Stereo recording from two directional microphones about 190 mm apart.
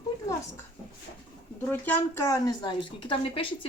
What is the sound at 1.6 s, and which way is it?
Speech, 10° left (ahead or behind).